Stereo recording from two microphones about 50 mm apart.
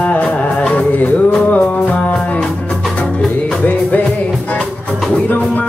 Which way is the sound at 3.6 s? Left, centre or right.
Left.